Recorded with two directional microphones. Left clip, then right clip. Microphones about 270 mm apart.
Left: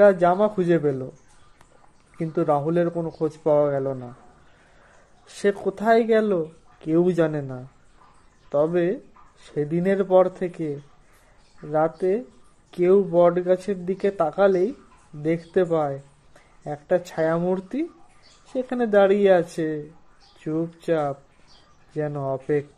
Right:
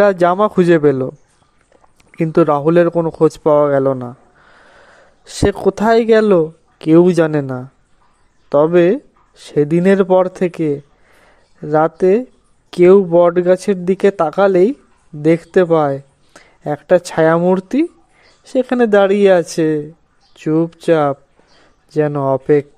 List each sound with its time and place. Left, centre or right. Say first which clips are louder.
0.0 s speech: right 5 dB; right
2.1 s a man's voice: right 9 dB; right
5.2 s speech: right 9 dB; right